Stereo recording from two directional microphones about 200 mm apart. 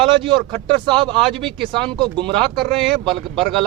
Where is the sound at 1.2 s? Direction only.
Centre (ahead or behind).